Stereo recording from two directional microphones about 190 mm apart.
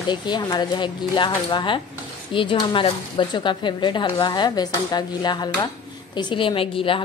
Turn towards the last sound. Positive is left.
turn(degrees=30)  # may be behind; listen again after turning